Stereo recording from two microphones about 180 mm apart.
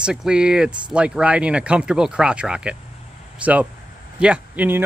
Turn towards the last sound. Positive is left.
turn(degrees=-10)  # may be behind; listen again after turning